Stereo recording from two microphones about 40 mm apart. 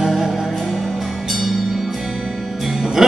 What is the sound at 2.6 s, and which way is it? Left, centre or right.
Music, centre.